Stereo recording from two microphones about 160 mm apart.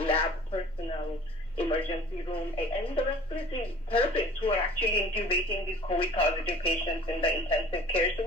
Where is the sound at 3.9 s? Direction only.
35° left (ahead or behind).